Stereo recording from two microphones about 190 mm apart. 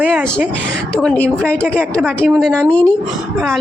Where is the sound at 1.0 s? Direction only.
5° left (ahead or behind).